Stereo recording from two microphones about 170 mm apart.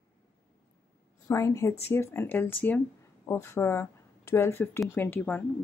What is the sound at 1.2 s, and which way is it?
Speech, 15° left (ahead or behind).